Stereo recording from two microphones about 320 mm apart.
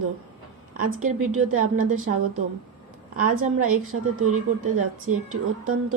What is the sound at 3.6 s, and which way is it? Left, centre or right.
A woman's voice, right.